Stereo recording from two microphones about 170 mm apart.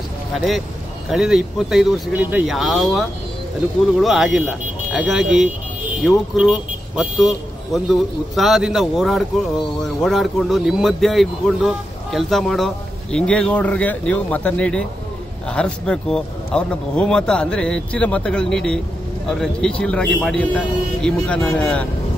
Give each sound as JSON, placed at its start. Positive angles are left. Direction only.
{"t": 1.0, "sound": "speech", "side_deg": 0}